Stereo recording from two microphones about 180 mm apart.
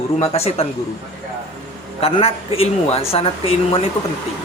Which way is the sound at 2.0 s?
30° left (ahead or behind).